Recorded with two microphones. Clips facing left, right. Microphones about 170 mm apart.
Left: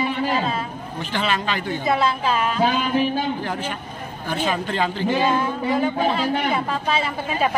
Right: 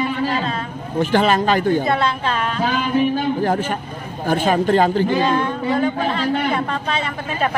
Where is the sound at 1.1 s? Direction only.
45° right (ahead or behind).